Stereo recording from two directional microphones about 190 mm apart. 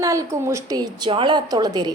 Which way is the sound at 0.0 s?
15° right (ahead or behind).